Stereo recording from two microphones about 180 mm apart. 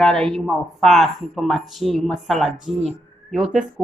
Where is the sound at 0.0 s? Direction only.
5° left (ahead or behind).